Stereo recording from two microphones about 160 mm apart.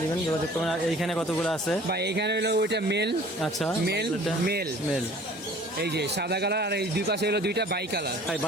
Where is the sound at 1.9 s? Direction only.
90° right.